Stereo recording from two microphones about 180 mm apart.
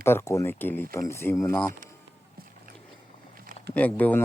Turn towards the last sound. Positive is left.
turn(degrees=10)  # may be behind; listen again after turning